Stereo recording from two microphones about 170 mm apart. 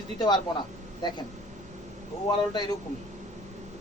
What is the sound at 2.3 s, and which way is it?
Speech, 25° left (ahead or behind).